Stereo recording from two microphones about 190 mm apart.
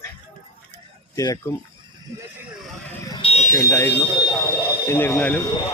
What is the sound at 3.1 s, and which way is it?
Fire alarm, 30° left (ahead or behind).